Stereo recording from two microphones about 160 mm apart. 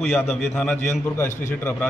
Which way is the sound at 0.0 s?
Centre (ahead or behind).